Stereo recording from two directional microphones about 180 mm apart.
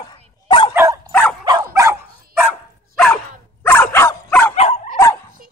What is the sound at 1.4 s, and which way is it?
Dog, 20° right (ahead or behind).